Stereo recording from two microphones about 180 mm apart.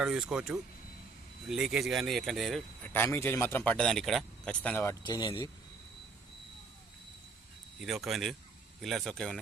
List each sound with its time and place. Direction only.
0.0 s speech: 5° right (ahead or behind)
5.0 s speech: 25° left (ahead or behind)
7.8 s speech: centre (ahead or behind)